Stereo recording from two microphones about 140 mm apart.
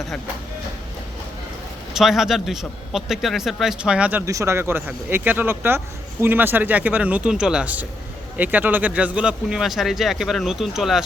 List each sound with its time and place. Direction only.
1.9 s speech: centre (ahead or behind)
4.3 s speech: 20° right (ahead or behind); by 11.0 s centre (ahead or behind)